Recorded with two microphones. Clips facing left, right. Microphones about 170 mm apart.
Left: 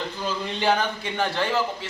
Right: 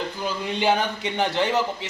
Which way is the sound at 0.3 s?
15° right (ahead or behind).